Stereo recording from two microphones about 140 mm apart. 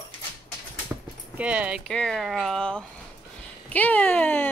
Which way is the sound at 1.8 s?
5° left (ahead or behind).